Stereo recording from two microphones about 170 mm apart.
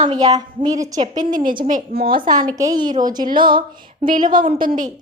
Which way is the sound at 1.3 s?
55° right (ahead or behind).